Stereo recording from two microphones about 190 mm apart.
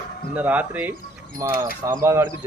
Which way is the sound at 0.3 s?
10° right (ahead or behind).